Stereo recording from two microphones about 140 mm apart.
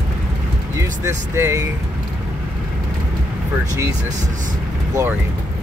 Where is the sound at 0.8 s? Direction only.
20° right (ahead or behind).